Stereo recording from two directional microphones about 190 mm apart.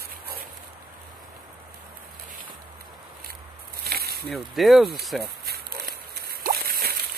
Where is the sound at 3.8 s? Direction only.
55° right (ahead or behind).